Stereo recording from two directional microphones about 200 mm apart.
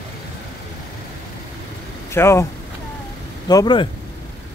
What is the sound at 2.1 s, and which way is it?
Speech, 15° left (ahead or behind).